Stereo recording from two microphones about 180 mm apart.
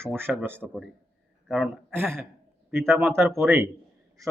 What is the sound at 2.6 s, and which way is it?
Speech, 15° right (ahead or behind).